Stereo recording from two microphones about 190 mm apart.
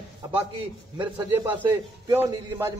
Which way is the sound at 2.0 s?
15° right (ahead or behind).